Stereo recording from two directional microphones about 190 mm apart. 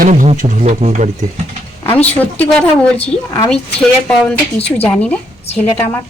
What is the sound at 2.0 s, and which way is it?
A woman's voice, 10° left (ahead or behind).